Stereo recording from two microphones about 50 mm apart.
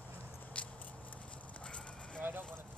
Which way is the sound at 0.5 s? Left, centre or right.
Left.